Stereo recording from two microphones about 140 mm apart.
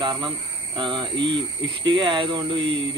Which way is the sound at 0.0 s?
35° right (ahead or behind).